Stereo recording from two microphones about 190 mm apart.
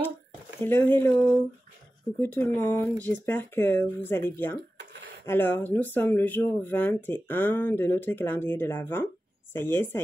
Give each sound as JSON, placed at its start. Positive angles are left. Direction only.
{"t": 0.6, "sound": "speech", "side_deg": 10}